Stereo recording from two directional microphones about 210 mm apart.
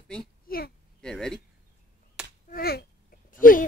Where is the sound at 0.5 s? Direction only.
45° left (ahead or behind).